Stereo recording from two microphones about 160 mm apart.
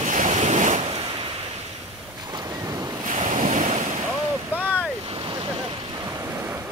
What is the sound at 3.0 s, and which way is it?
Waves, 50° right (ahead or behind).